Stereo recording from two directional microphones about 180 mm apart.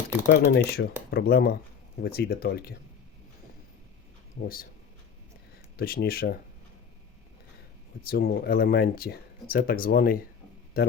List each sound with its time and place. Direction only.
0.3 s speech: 70° left (ahead or behind)
4.4 s speech: 55° left (ahead or behind)
5.7 s speech: 55° left (ahead or behind)
8.0 s speech: 55° left (ahead or behind)